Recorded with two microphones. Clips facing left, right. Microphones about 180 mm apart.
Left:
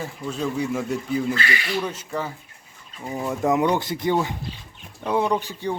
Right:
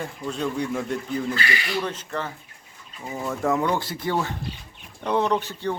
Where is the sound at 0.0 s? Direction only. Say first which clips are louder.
Left 1 dB; 5° left (ahead or behind).